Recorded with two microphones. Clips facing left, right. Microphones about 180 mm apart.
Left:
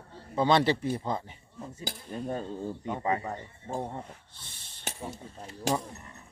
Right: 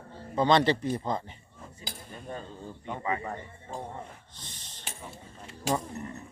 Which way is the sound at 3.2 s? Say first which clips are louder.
Even; 10° left (ahead or behind).